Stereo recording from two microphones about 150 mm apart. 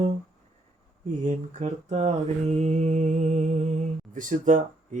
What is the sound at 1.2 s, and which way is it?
Mantra, 55° right (ahead or behind).